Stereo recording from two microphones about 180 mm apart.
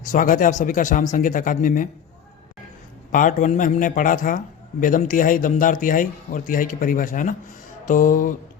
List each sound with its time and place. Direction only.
0.1 s a man's voice: 45° left (ahead or behind)
3.1 s a man's voice: 45° left (ahead or behind)